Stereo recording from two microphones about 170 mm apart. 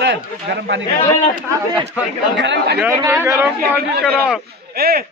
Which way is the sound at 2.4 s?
90° right.